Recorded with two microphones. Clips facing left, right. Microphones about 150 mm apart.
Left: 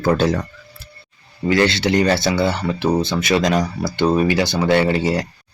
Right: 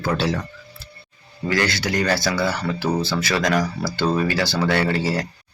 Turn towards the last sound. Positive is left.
turn(degrees=20)  # may be behind; listen again after turning